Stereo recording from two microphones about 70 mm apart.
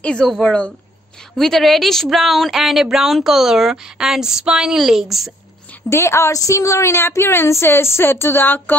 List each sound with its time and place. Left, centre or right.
0.0 s speech: centre
1.3 s speech: centre
5.9 s a woman's voice: left